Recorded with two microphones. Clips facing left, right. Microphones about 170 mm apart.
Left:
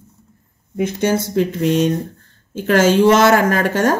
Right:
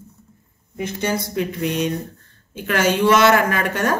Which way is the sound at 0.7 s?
50° left (ahead or behind).